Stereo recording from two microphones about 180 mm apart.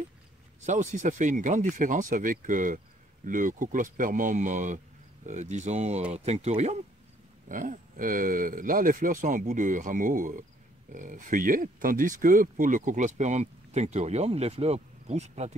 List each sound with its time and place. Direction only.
0.7 s speech: 40° right (ahead or behind)